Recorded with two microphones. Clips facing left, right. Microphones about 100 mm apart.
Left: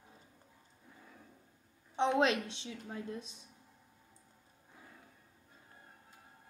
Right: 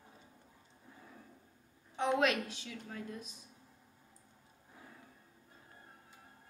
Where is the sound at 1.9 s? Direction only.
25° left (ahead or behind).